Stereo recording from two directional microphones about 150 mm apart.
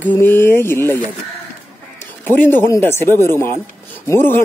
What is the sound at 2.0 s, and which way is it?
Speech, 15° left (ahead or behind).